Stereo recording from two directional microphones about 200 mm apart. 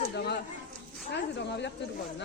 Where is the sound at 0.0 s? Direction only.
50° left (ahead or behind).